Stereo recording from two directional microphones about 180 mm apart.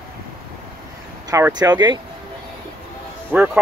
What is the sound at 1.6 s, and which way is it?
Speech, 25° right (ahead or behind).